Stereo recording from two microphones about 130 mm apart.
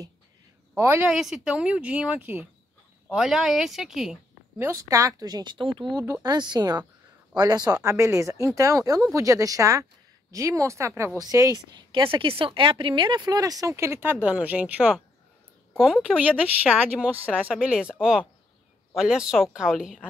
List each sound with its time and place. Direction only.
0.7 s speech: 15° right (ahead or behind)
4.6 s speech: 20° right (ahead or behind)
16.3 s speech: 10° right (ahead or behind)